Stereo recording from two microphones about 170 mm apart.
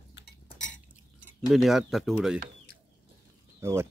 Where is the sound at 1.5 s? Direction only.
Centre (ahead or behind).